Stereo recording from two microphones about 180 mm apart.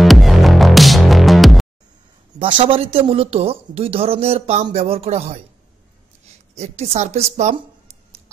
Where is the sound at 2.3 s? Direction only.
30° right (ahead or behind).